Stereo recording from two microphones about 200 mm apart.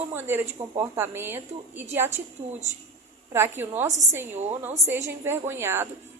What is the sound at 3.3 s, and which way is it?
Speech, 10° right (ahead or behind).